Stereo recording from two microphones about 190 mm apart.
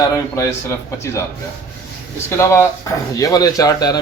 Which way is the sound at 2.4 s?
15° left (ahead or behind).